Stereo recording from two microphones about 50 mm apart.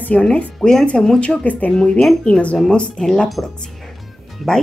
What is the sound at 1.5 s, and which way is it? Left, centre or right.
Speech, left.